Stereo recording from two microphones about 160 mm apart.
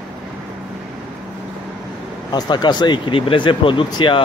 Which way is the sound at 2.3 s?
25° left (ahead or behind).